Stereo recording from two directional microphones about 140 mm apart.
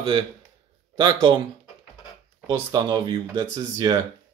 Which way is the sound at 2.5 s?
30° right (ahead or behind).